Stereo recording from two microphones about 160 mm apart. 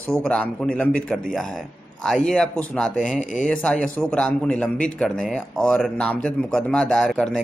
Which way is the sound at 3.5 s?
5° left (ahead or behind).